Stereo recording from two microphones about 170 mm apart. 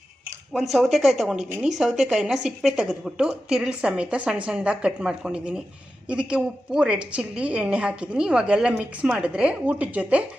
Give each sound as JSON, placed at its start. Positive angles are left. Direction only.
{"t": 0.5, "sound": "a woman's voice", "side_deg": 0}